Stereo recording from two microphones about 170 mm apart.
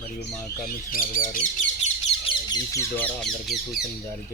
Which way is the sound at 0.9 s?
55° left (ahead or behind).